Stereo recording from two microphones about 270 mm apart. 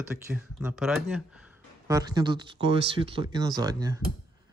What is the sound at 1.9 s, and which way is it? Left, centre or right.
Speech, centre.